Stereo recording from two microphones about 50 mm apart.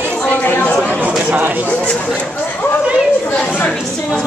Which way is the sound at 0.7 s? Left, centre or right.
Left.